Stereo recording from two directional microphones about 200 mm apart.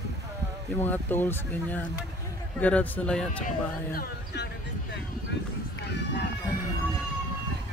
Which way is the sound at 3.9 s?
50° left (ahead or behind).